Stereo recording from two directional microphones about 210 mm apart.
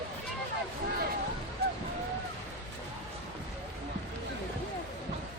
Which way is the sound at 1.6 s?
50° right (ahead or behind).